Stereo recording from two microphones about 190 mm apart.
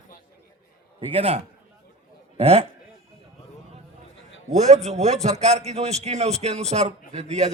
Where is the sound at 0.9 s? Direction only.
30° right (ahead or behind).